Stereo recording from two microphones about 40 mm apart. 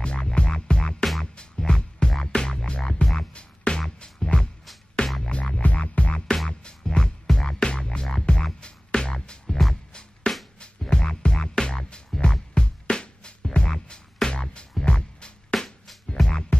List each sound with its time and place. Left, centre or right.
0.0 s music: left
1.0 s music: centre
1.3 s music: left
6.2 s music: centre
6.6 s music: left
9.5 s music: centre
10.6 s music: left